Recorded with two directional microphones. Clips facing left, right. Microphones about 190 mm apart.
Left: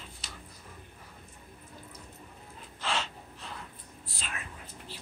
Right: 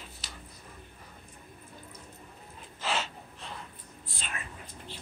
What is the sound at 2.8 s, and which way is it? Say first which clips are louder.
Gasp: right 1 dB; 5° right (ahead or behind).